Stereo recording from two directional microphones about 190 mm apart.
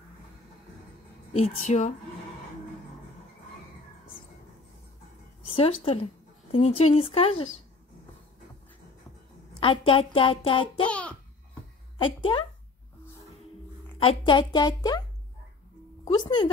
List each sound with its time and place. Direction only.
1.6 s speech: 40° left (ahead or behind)
5.6 s speech: 30° left (ahead or behind)
9.6 s speech: 30° left (ahead or behind)
10.9 s babbling: 5° left (ahead or behind)
12.3 s speech: 20° left (ahead or behind)
13.9 s speech: 25° left (ahead or behind)
16.1 s speech: 25° left (ahead or behind)